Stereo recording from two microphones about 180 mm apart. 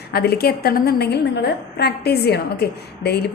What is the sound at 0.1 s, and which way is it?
A woman's voice, 60° left (ahead or behind).